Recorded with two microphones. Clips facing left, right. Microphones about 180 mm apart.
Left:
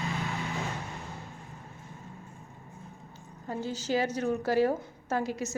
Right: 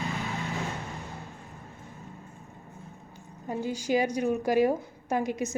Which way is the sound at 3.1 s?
15° right (ahead or behind).